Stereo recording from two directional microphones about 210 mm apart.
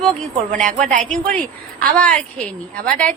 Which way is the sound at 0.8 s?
35° right (ahead or behind).